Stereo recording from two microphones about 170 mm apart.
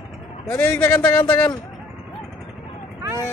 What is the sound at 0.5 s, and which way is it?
Speech, 15° left (ahead or behind).